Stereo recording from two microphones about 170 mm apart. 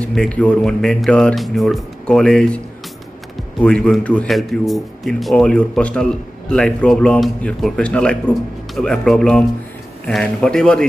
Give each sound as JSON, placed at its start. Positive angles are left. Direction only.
{"t": 0.0, "sound": "a man's voice", "side_deg": 5}
{"t": 3.6, "sound": "a man's voice", "side_deg": 5}